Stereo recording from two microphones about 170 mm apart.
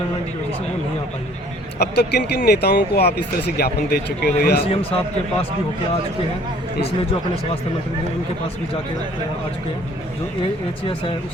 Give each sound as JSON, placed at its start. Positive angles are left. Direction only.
{"t": 1.8, "sound": "speech", "side_deg": 75}
{"t": 4.7, "sound": "a man's voice", "side_deg": 35}